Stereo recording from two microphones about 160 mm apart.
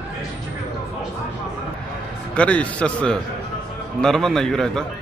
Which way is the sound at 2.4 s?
5° left (ahead or behind).